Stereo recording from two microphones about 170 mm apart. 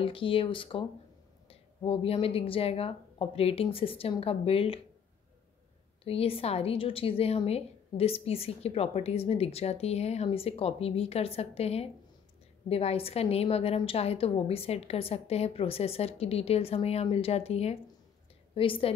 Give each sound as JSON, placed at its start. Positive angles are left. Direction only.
{"t": 0.0, "sound": "a woman's voice", "side_deg": 30}
{"t": 6.0, "sound": "a woman's voice", "side_deg": 35}